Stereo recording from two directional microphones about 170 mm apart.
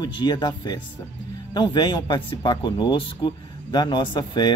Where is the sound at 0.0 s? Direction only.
25° left (ahead or behind).